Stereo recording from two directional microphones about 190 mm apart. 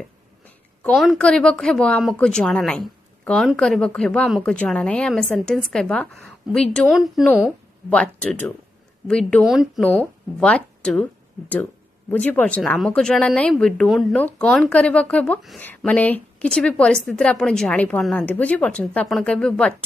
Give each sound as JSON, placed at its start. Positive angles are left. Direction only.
{"t": 0.8, "sound": "speech", "side_deg": 0}